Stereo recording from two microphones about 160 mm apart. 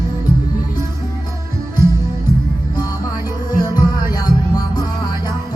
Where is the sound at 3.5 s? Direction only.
25° left (ahead or behind).